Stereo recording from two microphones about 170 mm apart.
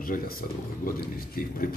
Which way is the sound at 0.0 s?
60° left (ahead or behind).